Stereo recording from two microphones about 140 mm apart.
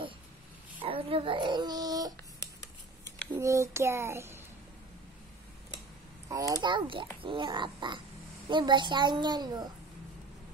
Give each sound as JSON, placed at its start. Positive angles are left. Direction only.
{"t": 0.8, "sound": "speech", "side_deg": -40}
{"t": 3.3, "sound": "child singing", "side_deg": -20}
{"t": 6.2, "sound": "child singing", "side_deg": -25}
{"t": 7.2, "sound": "a child's voice", "side_deg": -35}